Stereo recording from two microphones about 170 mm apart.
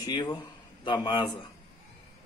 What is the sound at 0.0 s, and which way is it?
A man's voice, 25° left (ahead or behind).